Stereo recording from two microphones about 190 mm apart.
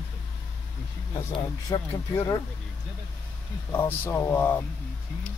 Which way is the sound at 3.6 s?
10° left (ahead or behind).